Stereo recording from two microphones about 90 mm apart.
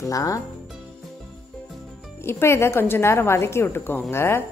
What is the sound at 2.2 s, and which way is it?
A woman's voice, 30° left (ahead or behind).